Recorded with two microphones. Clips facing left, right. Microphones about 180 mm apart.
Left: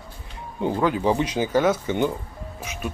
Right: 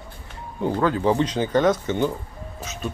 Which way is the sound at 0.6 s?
15° left (ahead or behind).